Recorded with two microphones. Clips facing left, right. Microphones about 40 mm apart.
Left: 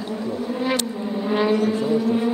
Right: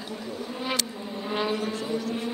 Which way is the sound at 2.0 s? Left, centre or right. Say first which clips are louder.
Left 10 dB; centre.